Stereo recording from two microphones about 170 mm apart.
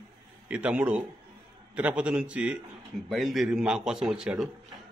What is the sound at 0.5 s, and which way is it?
A man's voice, 5° right (ahead or behind).